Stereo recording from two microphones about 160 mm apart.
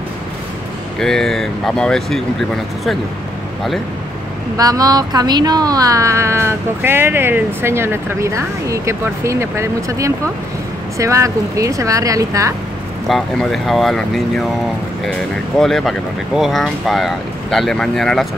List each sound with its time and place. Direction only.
0.9 s speech: 5° left (ahead or behind)
4.6 s speech: 25° right (ahead or behind)
13.1 s speech: centre (ahead or behind)
15.6 s speech: centre (ahead or behind)